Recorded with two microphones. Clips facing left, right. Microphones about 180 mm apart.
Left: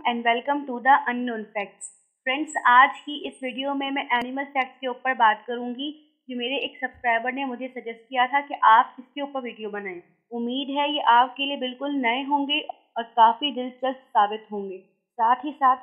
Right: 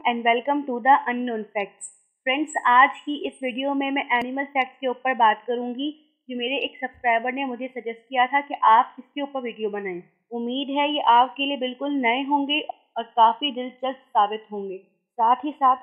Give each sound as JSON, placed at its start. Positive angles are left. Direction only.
{"t": 0.0, "sound": "a woman's voice", "side_deg": -10}
{"t": 10.3, "sound": "a woman's voice", "side_deg": 0}
{"t": 12.0, "sound": "a woman's voice", "side_deg": -15}
{"t": 12.9, "sound": "a woman's voice", "side_deg": 0}